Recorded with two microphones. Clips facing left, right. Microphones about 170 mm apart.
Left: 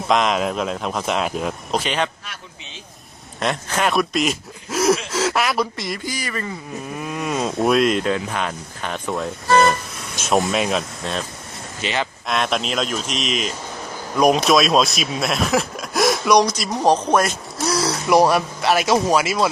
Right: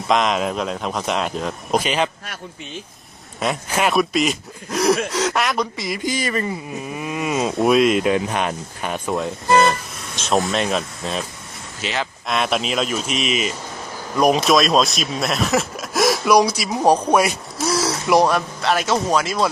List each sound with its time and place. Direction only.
0.0 s speech: centre (ahead or behind)
1.7 s speech: 10° right (ahead or behind)
3.4 s speech: 5° right (ahead or behind)
6.0 s speech: 20° right (ahead or behind)
6.8 s speech: 5° right (ahead or behind)
8.1 s speech: 20° right (ahead or behind); by 19.5 s 5° left (ahead or behind)